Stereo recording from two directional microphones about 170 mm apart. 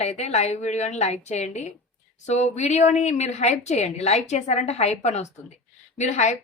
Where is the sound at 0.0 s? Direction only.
40° left (ahead or behind).